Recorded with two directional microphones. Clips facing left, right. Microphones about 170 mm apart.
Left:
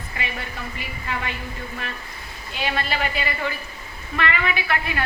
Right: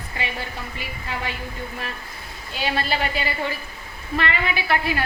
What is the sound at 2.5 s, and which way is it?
A woman's voice, 30° right (ahead or behind).